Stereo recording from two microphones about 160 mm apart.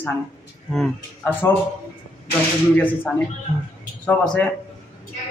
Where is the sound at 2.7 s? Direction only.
10° left (ahead or behind).